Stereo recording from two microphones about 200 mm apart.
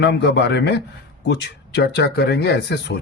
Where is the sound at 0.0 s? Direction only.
55° left (ahead or behind).